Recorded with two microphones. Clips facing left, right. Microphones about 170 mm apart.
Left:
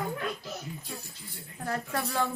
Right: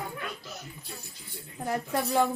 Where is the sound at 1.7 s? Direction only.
20° right (ahead or behind).